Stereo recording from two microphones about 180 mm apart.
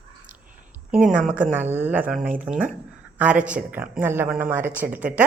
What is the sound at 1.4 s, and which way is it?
Speech, 10° right (ahead or behind).